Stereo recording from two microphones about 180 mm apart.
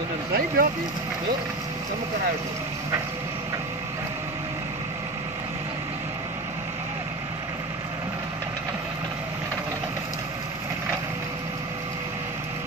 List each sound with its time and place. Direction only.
0.3 s speech: 55° right (ahead or behind)